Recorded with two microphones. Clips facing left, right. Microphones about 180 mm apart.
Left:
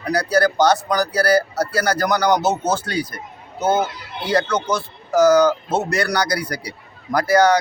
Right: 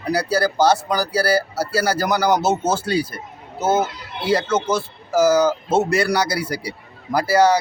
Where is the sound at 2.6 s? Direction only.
25° right (ahead or behind).